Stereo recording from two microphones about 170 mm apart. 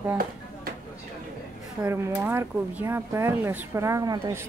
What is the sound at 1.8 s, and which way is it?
Speech, 15° right (ahead or behind).